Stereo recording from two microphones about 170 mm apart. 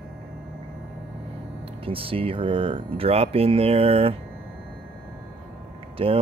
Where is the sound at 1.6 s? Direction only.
30° right (ahead or behind).